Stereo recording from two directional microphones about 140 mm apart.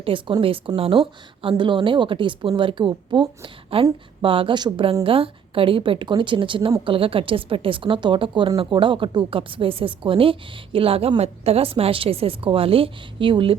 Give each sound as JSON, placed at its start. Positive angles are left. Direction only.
{"t": 0.0, "sound": "a woman's voice", "side_deg": -40}